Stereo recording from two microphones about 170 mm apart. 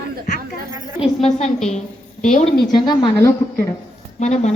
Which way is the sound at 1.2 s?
40° left (ahead or behind).